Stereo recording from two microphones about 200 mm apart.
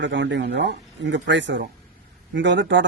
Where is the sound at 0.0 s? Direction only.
65° right (ahead or behind).